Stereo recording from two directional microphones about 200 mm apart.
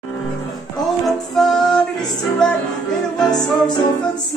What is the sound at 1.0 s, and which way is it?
Music, centre (ahead or behind).